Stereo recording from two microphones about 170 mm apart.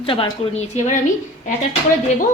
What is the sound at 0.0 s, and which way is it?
Speech, 30° left (ahead or behind).